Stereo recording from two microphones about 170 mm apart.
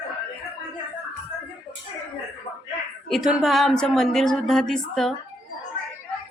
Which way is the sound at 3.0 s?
Centre (ahead or behind).